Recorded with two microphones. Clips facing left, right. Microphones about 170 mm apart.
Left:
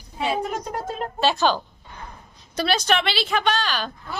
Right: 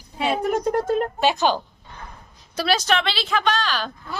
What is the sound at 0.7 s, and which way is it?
Speech, 50° right (ahead or behind).